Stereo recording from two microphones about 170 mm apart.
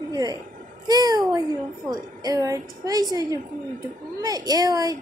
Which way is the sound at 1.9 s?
20° right (ahead or behind).